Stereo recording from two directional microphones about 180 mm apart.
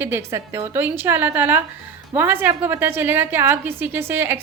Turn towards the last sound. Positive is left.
turn(degrees=-10)  # may be behind; listen again after turning